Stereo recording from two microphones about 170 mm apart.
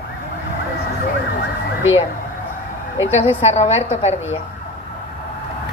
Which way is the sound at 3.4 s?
40° left (ahead or behind).